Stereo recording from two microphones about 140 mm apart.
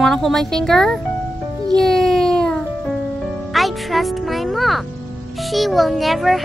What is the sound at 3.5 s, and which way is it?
A child's voice, centre (ahead or behind).